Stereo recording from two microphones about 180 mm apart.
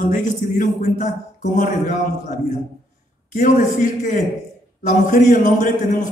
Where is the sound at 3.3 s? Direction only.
45° left (ahead or behind).